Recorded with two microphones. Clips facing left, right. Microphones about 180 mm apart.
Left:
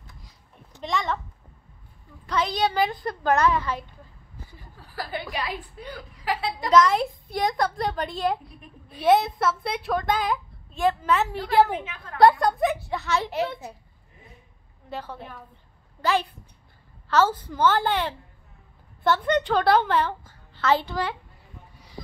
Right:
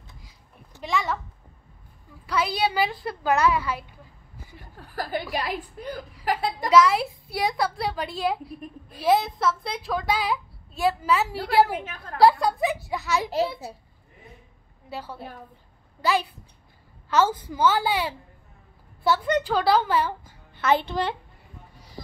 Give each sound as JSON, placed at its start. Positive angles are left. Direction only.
{"t": 0.2, "sound": "a sound", "side_deg": -5}
{"t": 2.2, "sound": "a woman's voice", "side_deg": -5}
{"t": 4.6, "sound": "a woman's voice", "side_deg": -55}
{"t": 6.7, "sound": "a child's voice", "side_deg": -5}
{"t": 11.8, "sound": "a woman's voice", "side_deg": -40}
{"t": 12.2, "sound": "a child's voice", "side_deg": -5}
{"t": 14.9, "sound": "a woman's voice", "side_deg": -10}